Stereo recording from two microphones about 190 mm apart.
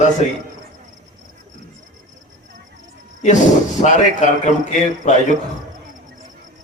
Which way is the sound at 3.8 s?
40° left (ahead or behind).